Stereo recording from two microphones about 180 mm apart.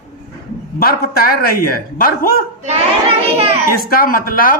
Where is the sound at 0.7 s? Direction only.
55° left (ahead or behind).